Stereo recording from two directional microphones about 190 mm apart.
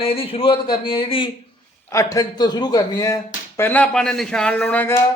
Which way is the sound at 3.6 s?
10° left (ahead or behind).